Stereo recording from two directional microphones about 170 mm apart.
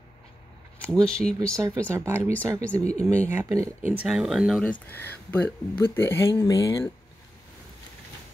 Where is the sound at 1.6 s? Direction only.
15° right (ahead or behind).